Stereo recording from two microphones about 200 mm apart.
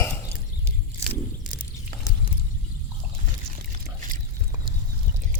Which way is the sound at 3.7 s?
40° right (ahead or behind).